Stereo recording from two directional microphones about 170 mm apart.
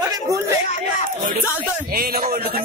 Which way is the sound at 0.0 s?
20° right (ahead or behind).